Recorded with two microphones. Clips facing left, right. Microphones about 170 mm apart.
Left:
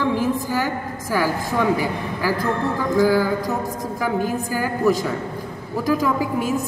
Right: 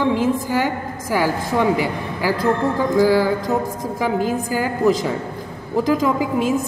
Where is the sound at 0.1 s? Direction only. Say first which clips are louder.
Right 2 dB; 15° right (ahead or behind).